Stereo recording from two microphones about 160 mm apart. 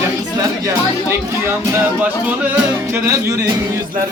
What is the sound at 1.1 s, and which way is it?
Speech, 15° right (ahead or behind).